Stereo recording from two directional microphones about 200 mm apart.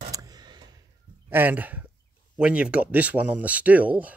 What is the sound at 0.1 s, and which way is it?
Tick, 20° right (ahead or behind).